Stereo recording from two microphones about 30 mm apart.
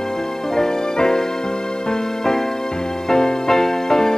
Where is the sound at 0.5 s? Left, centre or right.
Centre.